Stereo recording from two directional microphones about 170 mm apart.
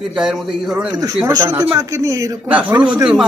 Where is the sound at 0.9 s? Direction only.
20° right (ahead or behind).